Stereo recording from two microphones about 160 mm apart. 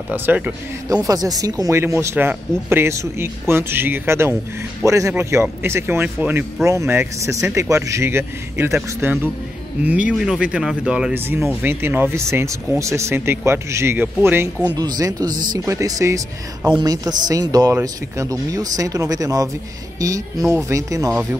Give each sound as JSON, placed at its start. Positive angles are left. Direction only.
{"t": 0.1, "sound": "speech", "side_deg": -10}
{"t": 1.0, "sound": "speech", "side_deg": -25}